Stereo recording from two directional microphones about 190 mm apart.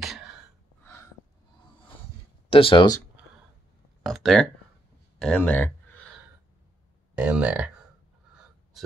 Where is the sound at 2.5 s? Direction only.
25° left (ahead or behind).